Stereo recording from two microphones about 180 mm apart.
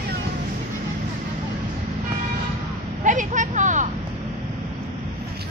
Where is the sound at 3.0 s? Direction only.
45° right (ahead or behind).